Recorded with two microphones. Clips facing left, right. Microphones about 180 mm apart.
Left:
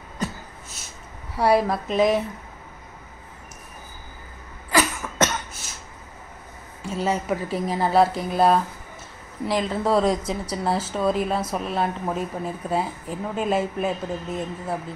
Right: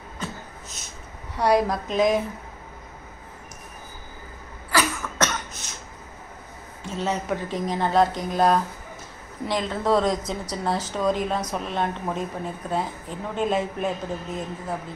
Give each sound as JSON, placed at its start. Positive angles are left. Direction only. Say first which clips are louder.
{"t": 1.3, "sound": "a woman's voice", "louder": "left 1 dB", "side_deg": 5}
{"t": 4.6, "sound": "cough", "louder": "left 2 dB", "side_deg": 20}
{"t": 6.9, "sound": "a woman's voice", "louder": "left 2 dB", "side_deg": 10}